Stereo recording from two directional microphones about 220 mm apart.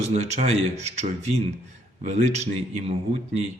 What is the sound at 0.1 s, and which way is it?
Speech, 30° right (ahead or behind).